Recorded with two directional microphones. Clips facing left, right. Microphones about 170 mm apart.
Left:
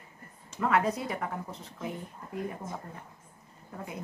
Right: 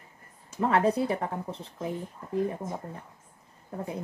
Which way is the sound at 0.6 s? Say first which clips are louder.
Right 3 dB; 30° right (ahead or behind).